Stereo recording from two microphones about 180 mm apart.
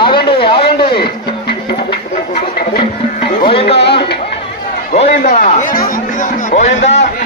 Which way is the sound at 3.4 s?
30° left (ahead or behind).